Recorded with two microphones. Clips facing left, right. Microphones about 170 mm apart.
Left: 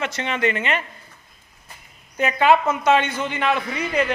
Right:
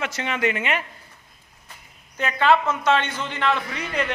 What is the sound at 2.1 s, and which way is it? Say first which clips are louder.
A man's voice: left 2 dB; 10° left (ahead or behind).